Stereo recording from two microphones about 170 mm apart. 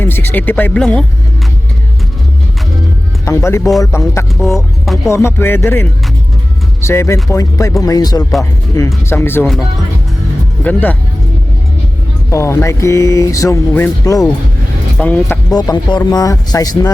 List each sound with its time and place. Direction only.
0.0 s speech: 10° left (ahead or behind)
3.2 s speech: 15° left (ahead or behind)
10.6 s speech: 10° left (ahead or behind)
12.3 s speech: 15° left (ahead or behind)
14.9 s speech: 10° left (ahead or behind)
15.4 s speech: 25° left (ahead or behind)